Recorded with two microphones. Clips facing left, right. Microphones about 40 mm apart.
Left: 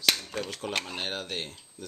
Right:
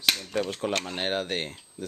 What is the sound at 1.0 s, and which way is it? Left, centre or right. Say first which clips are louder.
Speech: right 5 dB; right.